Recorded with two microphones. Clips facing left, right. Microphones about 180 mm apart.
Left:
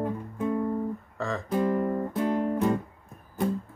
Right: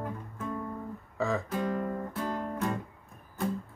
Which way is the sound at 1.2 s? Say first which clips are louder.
Right 3 dB; 5° right (ahead or behind).